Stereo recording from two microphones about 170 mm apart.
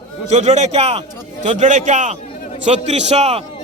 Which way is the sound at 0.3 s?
40° right (ahead or behind).